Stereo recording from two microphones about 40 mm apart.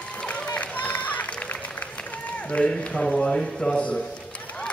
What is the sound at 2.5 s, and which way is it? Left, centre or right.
A man's voice, left.